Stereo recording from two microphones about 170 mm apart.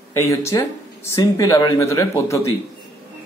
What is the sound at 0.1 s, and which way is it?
A man's voice, 15° left (ahead or behind).